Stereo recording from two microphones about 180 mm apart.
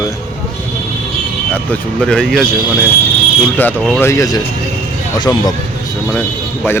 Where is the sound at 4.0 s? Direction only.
15° left (ahead or behind).